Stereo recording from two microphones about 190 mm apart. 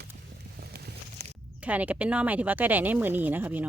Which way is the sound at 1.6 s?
10° right (ahead or behind).